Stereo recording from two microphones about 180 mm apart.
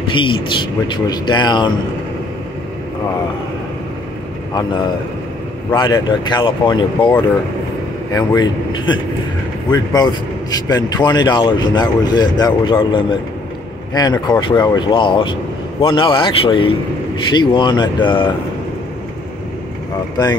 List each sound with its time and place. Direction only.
0.1 s speech: 25° left (ahead or behind)
5.8 s speech: 20° left (ahead or behind)